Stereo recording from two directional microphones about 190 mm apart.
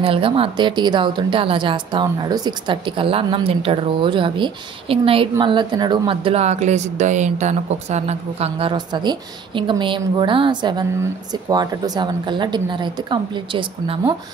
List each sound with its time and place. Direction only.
0.0 s speech: 30° right (ahead or behind)